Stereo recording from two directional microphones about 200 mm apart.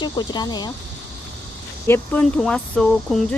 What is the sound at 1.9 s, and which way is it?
Speech, 5° left (ahead or behind).